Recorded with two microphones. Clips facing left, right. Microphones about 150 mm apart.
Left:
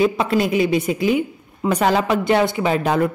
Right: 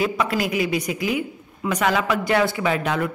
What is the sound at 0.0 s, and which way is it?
A woman's voice, 25° left (ahead or behind).